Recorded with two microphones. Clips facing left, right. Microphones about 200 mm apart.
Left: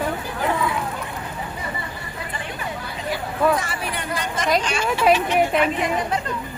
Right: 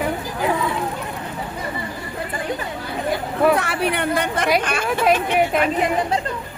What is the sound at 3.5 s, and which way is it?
Speech, 65° right (ahead or behind).